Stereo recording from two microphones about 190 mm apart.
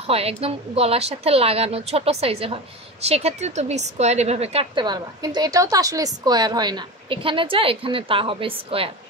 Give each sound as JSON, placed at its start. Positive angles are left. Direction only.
{"t": 0.0, "sound": "a woman's voice", "side_deg": -30}